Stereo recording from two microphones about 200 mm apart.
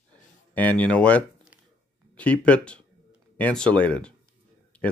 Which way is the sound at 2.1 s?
5° left (ahead or behind).